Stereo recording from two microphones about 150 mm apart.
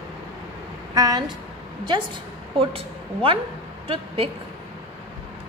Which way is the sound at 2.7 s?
35° right (ahead or behind).